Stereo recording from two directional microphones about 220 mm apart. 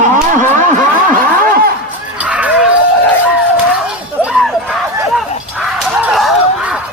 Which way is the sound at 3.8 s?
5° right (ahead or behind).